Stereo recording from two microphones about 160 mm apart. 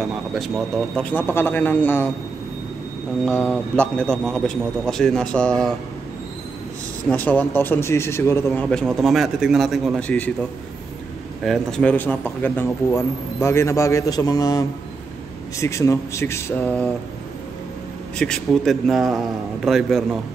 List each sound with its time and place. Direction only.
0.0 s speech: centre (ahead or behind)
1.1 s a man's voice: 10° left (ahead or behind)
3.3 s a man's voice: 10° left (ahead or behind)
7.1 s a man's voice: 10° left (ahead or behind)
8.6 s a man's voice: 5° left (ahead or behind)
11.4 s a man's voice: centre (ahead or behind)
18.1 s a man's voice: 5° left (ahead or behind)